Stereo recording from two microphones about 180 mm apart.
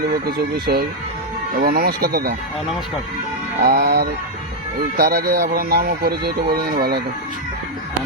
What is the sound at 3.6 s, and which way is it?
Speech, 55° right (ahead or behind).